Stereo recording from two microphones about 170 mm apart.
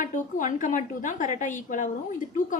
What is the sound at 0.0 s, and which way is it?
A woman's voice, 50° left (ahead or behind).